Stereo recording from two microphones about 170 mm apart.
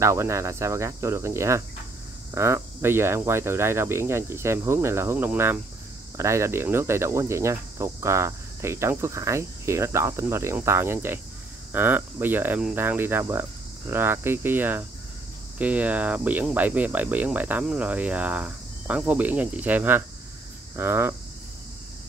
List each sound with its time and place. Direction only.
0.0 s cricket: 15° right (ahead or behind)